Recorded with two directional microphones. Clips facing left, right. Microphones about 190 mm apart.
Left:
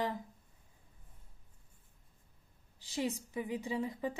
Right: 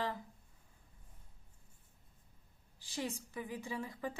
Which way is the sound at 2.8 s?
20° left (ahead or behind).